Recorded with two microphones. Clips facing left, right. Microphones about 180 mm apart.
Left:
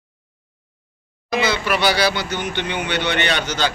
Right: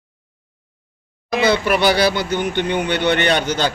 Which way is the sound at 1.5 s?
50° right (ahead or behind).